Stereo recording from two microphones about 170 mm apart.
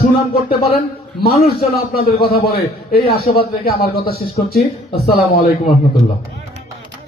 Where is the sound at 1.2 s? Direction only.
65° left (ahead or behind).